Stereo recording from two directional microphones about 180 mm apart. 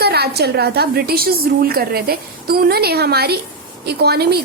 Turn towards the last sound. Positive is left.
turn(degrees=-60)  # may be behind; listen again after turning